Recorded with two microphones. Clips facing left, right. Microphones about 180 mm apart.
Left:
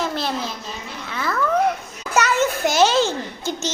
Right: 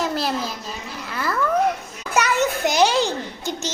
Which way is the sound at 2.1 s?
15° right (ahead or behind).